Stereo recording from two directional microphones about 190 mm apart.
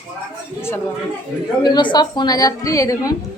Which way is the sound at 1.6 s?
25° left (ahead or behind).